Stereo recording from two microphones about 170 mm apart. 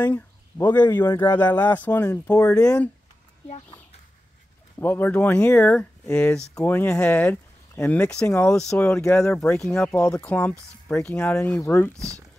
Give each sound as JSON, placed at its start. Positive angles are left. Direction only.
{"t": 0.0, "sound": "speech", "side_deg": 10}
{"t": 4.7, "sound": "speech", "side_deg": 10}